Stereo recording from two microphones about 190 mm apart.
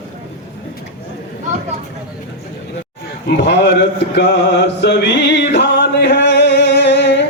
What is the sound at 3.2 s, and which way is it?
Mantra, 60° left (ahead or behind).